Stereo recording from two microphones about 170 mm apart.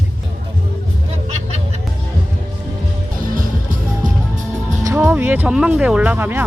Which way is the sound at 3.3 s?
55° right (ahead or behind).